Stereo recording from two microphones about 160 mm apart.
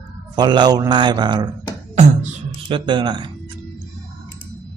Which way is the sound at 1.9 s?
50° right (ahead or behind).